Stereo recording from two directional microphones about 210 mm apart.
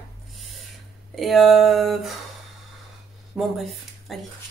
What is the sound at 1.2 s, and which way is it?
Speech, centre (ahead or behind).